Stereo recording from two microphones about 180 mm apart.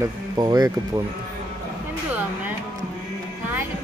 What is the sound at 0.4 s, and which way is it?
Speech, 20° right (ahead or behind).